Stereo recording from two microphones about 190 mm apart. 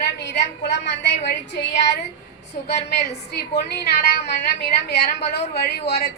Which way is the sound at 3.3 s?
60° left (ahead or behind).